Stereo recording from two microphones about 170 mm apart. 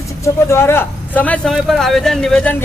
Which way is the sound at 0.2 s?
15° left (ahead or behind).